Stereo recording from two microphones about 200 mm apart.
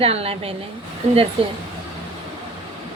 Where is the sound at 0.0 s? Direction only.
30° right (ahead or behind).